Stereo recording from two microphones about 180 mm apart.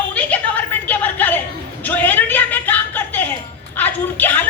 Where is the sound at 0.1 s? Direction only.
5° left (ahead or behind).